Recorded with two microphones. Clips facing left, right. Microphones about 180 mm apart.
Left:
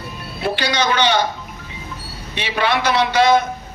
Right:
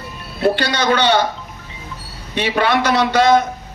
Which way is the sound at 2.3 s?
50° right (ahead or behind).